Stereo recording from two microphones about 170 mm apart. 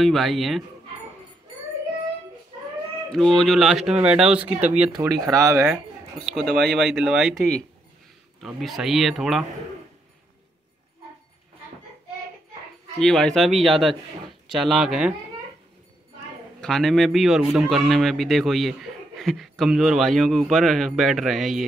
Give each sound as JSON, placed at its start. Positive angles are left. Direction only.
{"t": 0.0, "sound": "a man's voice", "side_deg": 0}
{"t": 3.1, "sound": "a man's voice", "side_deg": 0}
{"t": 6.2, "sound": "a man's voice", "side_deg": 0}
{"t": 13.0, "sound": "a man's voice", "side_deg": 5}
{"t": 16.6, "sound": "a man's voice", "side_deg": 5}